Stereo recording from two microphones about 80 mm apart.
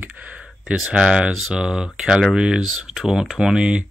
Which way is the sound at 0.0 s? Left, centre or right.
Right.